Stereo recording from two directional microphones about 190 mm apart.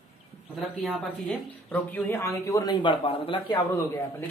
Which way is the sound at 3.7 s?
15° left (ahead or behind).